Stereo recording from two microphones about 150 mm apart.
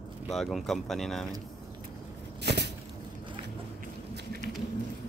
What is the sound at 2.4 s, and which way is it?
Vehicle, 90° right.